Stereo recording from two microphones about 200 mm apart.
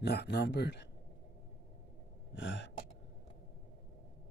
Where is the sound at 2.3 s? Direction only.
65° left (ahead or behind).